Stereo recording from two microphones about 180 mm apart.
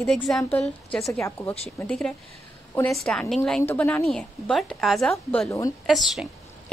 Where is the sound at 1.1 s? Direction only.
15° left (ahead or behind).